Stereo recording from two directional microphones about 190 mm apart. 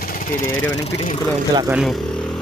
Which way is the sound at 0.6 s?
15° left (ahead or behind).